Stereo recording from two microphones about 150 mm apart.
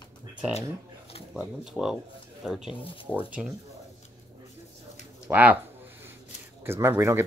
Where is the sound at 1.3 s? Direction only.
5° right (ahead or behind).